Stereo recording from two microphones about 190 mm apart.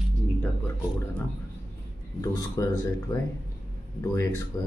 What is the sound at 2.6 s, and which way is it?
Speech, 20° left (ahead or behind).